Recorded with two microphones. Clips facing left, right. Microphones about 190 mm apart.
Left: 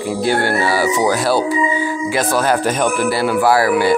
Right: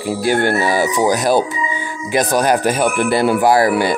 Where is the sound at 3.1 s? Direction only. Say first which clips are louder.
Right 3 dB; 20° right (ahead or behind).